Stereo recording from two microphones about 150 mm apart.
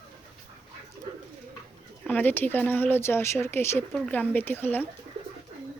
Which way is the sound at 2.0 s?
10° left (ahead or behind).